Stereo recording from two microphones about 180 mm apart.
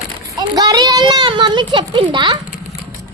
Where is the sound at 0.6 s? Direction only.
20° right (ahead or behind).